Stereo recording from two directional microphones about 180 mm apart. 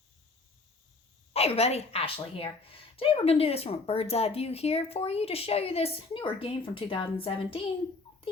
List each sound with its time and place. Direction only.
1.3 s speech: 35° left (ahead or behind)